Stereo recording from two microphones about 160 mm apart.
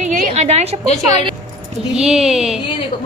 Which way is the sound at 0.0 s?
45° right (ahead or behind).